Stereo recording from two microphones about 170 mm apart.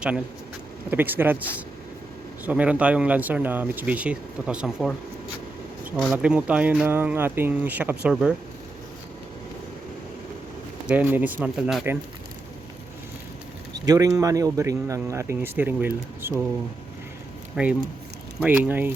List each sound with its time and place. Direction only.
0.9 s speech: 10° right (ahead or behind)
10.8 s speech: 10° right (ahead or behind)
13.8 s speech: 20° right (ahead or behind)
17.5 s speech: 5° right (ahead or behind)